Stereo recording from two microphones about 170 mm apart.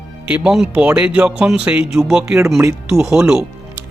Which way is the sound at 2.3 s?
15° right (ahead or behind).